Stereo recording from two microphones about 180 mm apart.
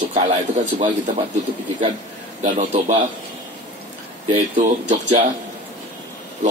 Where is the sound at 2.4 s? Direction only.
40° right (ahead or behind).